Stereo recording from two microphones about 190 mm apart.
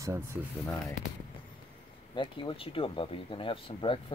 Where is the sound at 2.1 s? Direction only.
25° left (ahead or behind).